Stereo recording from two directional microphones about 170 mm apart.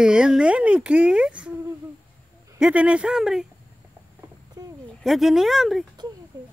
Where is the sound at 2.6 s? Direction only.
5° right (ahead or behind).